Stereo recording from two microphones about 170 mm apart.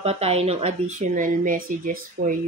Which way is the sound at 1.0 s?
50° right (ahead or behind).